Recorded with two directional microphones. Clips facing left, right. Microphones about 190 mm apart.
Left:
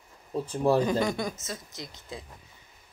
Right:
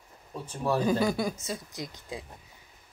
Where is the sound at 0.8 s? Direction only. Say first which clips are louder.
Right 1 dB; 5° right (ahead or behind).